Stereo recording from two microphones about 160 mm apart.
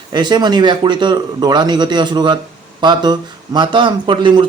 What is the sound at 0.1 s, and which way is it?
Speech, 25° right (ahead or behind).